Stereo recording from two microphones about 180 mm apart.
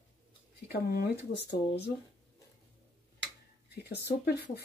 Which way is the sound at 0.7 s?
60° left (ahead or behind).